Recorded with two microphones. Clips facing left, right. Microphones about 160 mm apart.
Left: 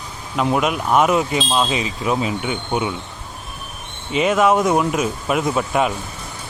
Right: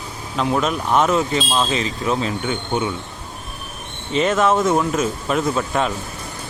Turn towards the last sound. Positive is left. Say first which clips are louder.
# left 1 dB
turn(degrees=10)  # may be behind; listen again after turning